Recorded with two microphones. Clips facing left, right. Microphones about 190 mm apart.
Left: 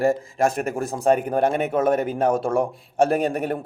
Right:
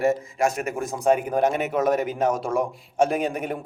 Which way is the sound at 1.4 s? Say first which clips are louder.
Left 2 dB; 55° left (ahead or behind).